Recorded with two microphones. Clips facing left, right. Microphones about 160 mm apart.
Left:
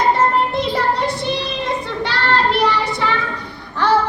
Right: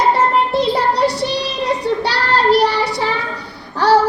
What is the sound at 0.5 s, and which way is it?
Child singing, 35° right (ahead or behind).